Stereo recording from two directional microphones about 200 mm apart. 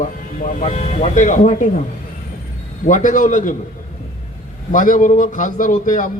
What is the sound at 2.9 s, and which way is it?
Speech, 40° left (ahead or behind).